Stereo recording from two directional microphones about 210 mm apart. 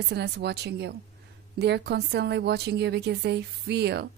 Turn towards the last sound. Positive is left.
turn(degrees=-55)  # may be behind; listen again after turning